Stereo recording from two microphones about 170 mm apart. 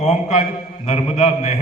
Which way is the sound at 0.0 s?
45° left (ahead or behind).